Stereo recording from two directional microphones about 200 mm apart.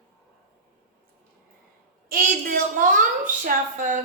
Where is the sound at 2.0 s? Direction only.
45° right (ahead or behind).